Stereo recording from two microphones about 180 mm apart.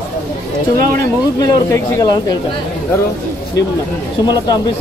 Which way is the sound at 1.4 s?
20° left (ahead or behind).